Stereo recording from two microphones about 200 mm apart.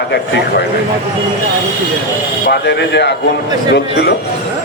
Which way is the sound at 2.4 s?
55° left (ahead or behind).